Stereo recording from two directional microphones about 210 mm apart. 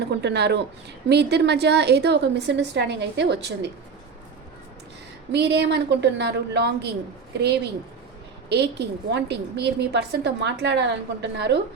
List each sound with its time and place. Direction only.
0.1 s a woman's voice: 55° right (ahead or behind)
5.3 s a woman's voice: 55° right (ahead or behind)
8.4 s a woman's voice: 55° right (ahead or behind)